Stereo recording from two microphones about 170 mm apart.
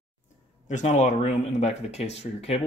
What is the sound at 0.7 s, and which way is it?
Speech, 45° left (ahead or behind).